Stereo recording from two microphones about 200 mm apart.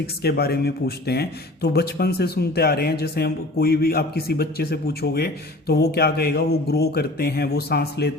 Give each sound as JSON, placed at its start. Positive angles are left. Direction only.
{"t": 0.2, "sound": "a man's voice", "side_deg": 50}